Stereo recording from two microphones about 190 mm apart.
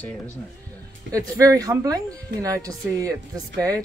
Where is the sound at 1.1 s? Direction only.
15° right (ahead or behind).